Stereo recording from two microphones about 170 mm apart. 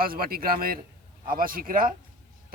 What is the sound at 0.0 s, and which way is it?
Speech, 60° right (ahead or behind).